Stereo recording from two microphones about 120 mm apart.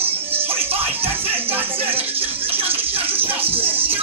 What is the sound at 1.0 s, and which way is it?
Music, 15° right (ahead or behind).